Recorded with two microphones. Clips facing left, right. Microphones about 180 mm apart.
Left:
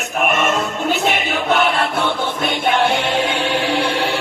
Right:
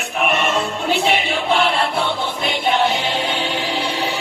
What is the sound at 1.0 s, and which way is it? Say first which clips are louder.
Music: even; 45° left (ahead or behind).